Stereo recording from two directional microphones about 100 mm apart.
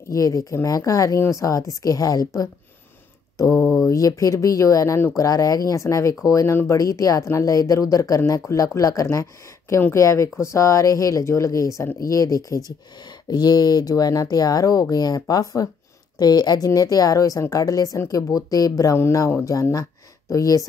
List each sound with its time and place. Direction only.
0.1 s speech: 35° left (ahead or behind)